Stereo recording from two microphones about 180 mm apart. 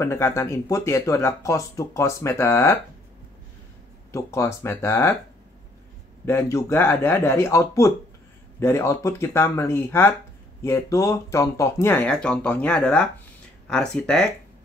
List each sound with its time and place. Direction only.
0.0 s speech: 15° left (ahead or behind)
4.1 s speech: 15° left (ahead or behind)
6.2 s speech: 15° left (ahead or behind)